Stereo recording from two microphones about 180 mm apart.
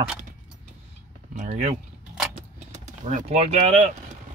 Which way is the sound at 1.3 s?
40° right (ahead or behind).